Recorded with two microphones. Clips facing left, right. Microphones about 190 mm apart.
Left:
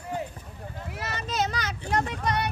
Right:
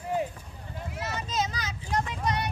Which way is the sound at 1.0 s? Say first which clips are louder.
Left 2 dB; 70° left (ahead or behind).